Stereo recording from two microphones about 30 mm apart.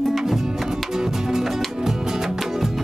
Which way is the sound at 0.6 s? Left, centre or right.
Centre.